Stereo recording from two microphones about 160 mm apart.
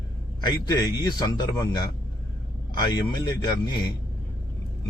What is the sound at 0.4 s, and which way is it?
Speech, 25° left (ahead or behind).